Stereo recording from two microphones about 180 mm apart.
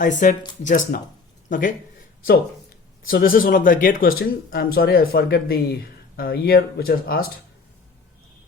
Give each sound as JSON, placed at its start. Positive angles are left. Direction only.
{"t": 0.0, "sound": "speech", "side_deg": 45}
{"t": 3.1, "sound": "speech", "side_deg": 50}